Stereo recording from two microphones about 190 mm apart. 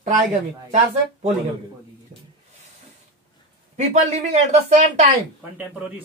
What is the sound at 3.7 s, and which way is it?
Speech, 35° right (ahead or behind).